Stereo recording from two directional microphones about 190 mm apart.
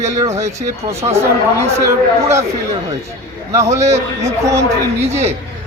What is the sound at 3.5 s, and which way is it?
Speech, 15° right (ahead or behind).